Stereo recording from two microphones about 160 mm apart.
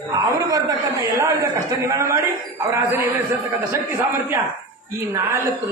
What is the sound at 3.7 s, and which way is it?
A man's voice, 15° right (ahead or behind).